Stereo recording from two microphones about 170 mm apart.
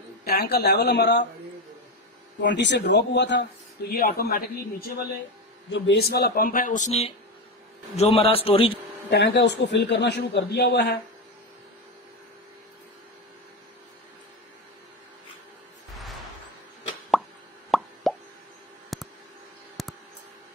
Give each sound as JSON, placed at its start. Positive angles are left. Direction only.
{"t": 0.2, "sound": "speech", "side_deg": 65}
{"t": 2.4, "sound": "speech", "side_deg": 90}
{"t": 5.7, "sound": "a man's voice", "side_deg": 80}
{"t": 9.1, "sound": "speech", "side_deg": 90}
{"t": 17.6, "sound": "plop", "side_deg": 0}
{"t": 18.9, "sound": "a sound", "side_deg": 0}